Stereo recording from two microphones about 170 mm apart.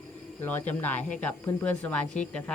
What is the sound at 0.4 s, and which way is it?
Speech, 10° left (ahead or behind).